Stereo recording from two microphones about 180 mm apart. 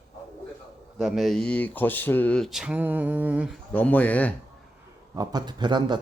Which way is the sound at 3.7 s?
10° left (ahead or behind).